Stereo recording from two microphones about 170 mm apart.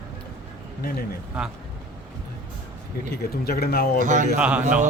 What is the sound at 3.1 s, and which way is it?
Speech, 65° left (ahead or behind).